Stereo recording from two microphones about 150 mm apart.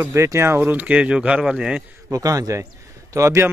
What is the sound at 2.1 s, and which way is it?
Speech, 20° right (ahead or behind).